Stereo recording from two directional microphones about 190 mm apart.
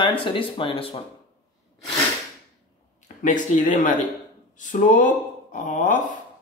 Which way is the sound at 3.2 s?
40° left (ahead or behind).